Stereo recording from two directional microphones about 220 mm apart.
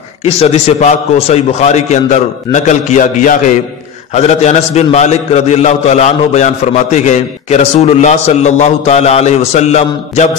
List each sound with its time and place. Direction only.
0.2 s a man's voice: 30° left (ahead or behind)